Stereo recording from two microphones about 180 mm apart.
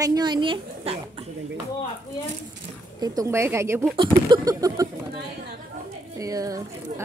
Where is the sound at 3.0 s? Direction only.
20° right (ahead or behind).